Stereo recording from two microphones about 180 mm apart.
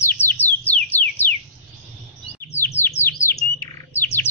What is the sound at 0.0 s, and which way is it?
Bird, 10° left (ahead or behind).